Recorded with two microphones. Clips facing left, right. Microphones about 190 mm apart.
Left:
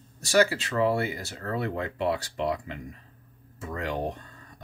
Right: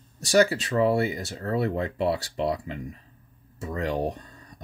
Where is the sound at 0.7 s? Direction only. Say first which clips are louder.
Right 3 dB; 25° right (ahead or behind).